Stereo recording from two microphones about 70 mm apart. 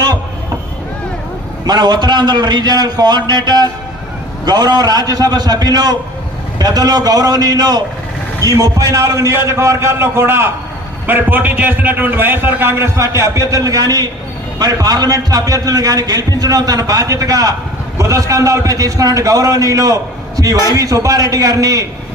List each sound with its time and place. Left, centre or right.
1.6 s a man's voice: right
4.4 s a man's voice: right
8.4 s a man's voice: right